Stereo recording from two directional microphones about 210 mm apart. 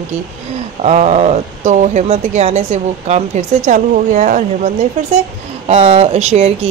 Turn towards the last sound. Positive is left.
turn(degrees=-30)  # may be behind; listen again after turning